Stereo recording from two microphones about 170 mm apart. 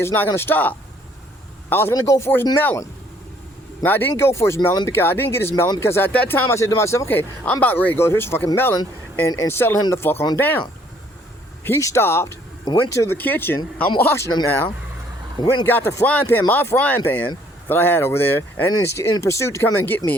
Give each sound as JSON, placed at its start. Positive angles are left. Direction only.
{"t": 0.0, "sound": "speech", "side_deg": 10}
{"t": 11.6, "sound": "speech", "side_deg": 15}
{"t": 12.6, "sound": "speech", "side_deg": 25}